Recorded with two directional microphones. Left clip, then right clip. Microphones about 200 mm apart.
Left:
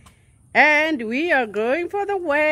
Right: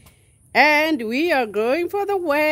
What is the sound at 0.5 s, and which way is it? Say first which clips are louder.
Speech: even; 15° right (ahead or behind).